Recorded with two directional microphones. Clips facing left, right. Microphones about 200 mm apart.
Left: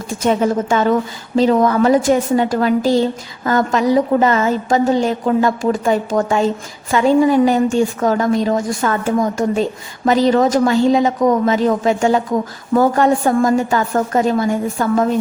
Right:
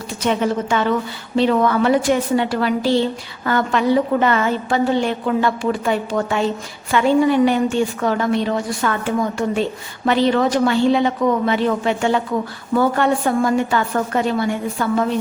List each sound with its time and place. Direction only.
0.1 s a woman's voice: 45° left (ahead or behind)